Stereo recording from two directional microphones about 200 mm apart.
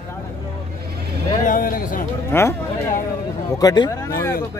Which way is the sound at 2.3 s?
15° left (ahead or behind).